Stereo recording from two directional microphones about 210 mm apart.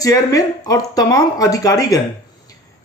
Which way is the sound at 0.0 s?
15° left (ahead or behind).